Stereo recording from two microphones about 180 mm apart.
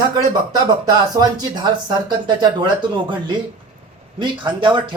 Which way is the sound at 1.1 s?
20° right (ahead or behind).